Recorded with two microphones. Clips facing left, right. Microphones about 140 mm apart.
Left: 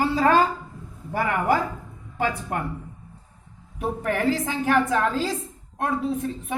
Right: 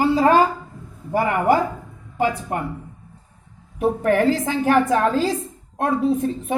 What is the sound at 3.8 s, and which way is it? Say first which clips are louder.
A woman's voice: right 7 dB; 30° right (ahead or behind).